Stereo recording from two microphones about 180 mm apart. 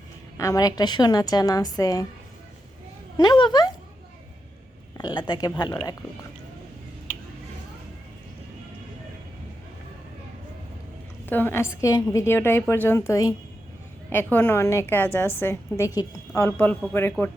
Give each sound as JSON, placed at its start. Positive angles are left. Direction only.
{"t": 0.3, "sound": "a woman's voice", "side_deg": 20}
{"t": 3.2, "sound": "a woman's voice", "side_deg": 25}
{"t": 4.9, "sound": "a woman's voice", "side_deg": 25}
{"t": 11.3, "sound": "a woman's voice", "side_deg": 10}